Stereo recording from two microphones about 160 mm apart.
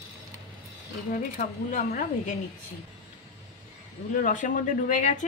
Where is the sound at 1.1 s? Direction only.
55° left (ahead or behind).